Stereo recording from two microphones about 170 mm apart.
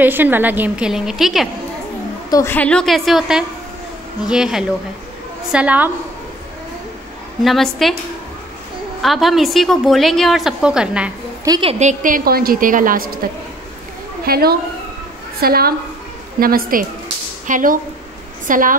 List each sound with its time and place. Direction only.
0.0 s a woman's voice: 10° right (ahead or behind)
2.3 s a woman's voice: 10° left (ahead or behind); by 5.9 s 5° right (ahead or behind)
7.4 s a woman's voice: centre (ahead or behind)
9.0 s a woman's voice: centre (ahead or behind)
11.4 s a woman's voice: 25° right (ahead or behind)
11.8 s a woman's voice: 50° right (ahead or behind)
14.2 s a woman's voice: 65° right (ahead or behind)